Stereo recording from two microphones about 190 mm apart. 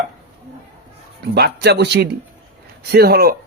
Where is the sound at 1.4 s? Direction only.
60° right (ahead or behind).